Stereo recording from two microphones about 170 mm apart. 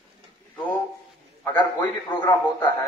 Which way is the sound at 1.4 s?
10° left (ahead or behind).